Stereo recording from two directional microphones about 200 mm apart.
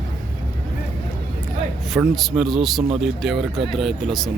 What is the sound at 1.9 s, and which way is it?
A man's voice, centre (ahead or behind).